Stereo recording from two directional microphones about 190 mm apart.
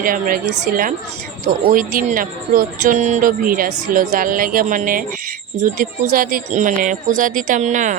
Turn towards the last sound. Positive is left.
turn(degrees=-40)  # may be behind; listen again after turning